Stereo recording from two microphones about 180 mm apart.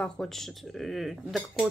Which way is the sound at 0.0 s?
Centre (ahead or behind).